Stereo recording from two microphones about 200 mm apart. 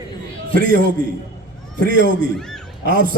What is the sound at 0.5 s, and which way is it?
Speech, 45° right (ahead or behind).